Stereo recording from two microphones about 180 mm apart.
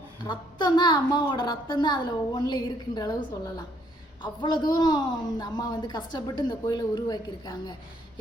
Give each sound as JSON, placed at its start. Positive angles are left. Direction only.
{"t": 0.2, "sound": "a woman's voice", "side_deg": 25}